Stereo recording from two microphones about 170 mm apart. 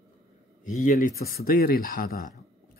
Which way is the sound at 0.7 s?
50° left (ahead or behind).